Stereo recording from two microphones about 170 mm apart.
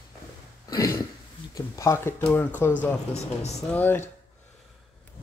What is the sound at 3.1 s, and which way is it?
Speech, 40° left (ahead or behind).